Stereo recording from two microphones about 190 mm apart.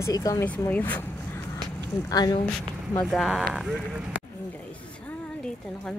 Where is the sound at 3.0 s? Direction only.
Centre (ahead or behind).